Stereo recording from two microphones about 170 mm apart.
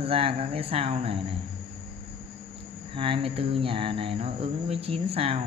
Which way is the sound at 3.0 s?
35° right (ahead or behind).